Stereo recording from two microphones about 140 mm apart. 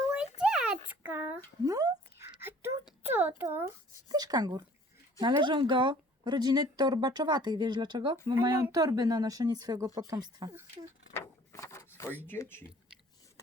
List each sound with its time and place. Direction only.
0.0 s a sound: 5° right (ahead or behind)
1.6 s speech: 25° right (ahead or behind)
3.2 s a child's voice: 15° right (ahead or behind)
4.1 s speech: 30° right (ahead or behind)
11.1 s a sound: 20° left (ahead or behind)
12.2 s speech: 15° left (ahead or behind)